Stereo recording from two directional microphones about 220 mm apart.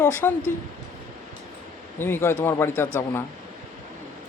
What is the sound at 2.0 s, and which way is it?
Speech, 10° left (ahead or behind).